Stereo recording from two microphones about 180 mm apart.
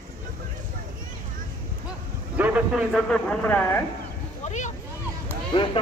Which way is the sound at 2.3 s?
10° right (ahead or behind).